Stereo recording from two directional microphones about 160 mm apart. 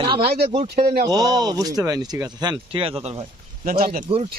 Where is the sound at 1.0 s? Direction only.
25° right (ahead or behind).